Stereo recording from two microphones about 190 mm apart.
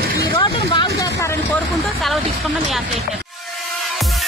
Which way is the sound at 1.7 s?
Centre (ahead or behind).